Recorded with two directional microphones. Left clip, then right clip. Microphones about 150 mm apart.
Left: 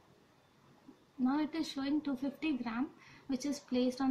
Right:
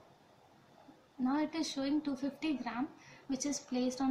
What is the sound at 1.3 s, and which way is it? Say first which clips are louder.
A woman's voice: even; 25° left (ahead or behind).